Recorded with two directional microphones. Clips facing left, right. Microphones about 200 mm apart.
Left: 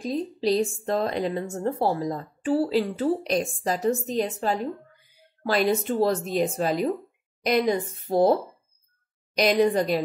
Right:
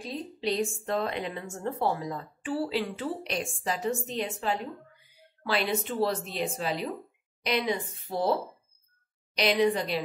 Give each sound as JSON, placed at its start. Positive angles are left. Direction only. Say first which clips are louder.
{"t": 0.0, "sound": "a woman's voice", "louder": "left 7 dB", "side_deg": 40}